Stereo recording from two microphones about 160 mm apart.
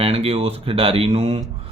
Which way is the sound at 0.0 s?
35° right (ahead or behind).